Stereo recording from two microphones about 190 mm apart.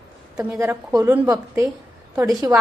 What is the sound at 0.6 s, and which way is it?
A woman's voice, 15° right (ahead or behind).